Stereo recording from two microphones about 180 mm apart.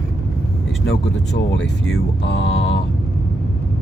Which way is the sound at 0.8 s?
80° left.